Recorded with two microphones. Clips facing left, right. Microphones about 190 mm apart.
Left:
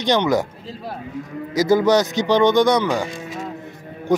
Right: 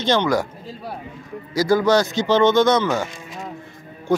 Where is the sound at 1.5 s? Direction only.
20° left (ahead or behind).